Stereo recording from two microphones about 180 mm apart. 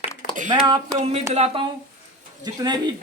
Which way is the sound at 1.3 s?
35° right (ahead or behind).